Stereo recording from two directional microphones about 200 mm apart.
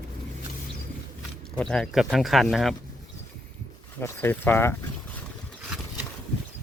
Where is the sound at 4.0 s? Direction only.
10° left (ahead or behind).